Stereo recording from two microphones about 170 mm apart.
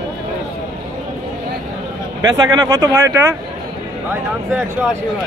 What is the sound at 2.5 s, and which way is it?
Speech, 20° right (ahead or behind).